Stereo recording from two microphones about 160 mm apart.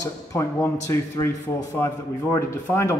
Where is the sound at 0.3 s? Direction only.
20° left (ahead or behind).